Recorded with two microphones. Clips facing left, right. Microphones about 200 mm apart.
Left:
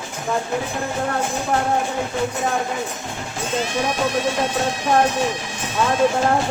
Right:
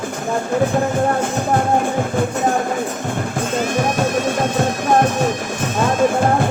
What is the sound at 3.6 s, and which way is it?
Music, 50° right (ahead or behind).